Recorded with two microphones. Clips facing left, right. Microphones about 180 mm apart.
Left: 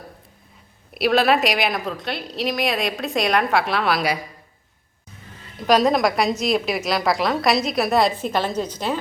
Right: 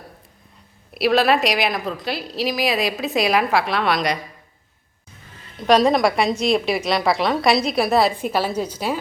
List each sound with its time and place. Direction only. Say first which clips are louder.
0.9 s a woman's voice: right 1 dB; centre (ahead or behind)
5.6 s a woman's voice: right 2 dB; centre (ahead or behind)